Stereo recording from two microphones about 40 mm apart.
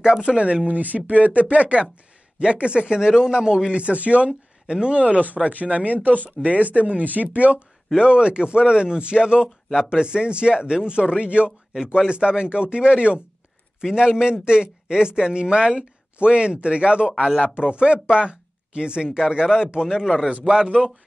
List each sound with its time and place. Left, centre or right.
0.0 s speech: right
0.7 s speech: right
7.9 s speech: right
20.2 s speech: right
20.8 s speech: centre